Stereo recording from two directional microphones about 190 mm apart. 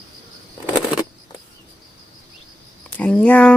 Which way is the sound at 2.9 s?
5° left (ahead or behind).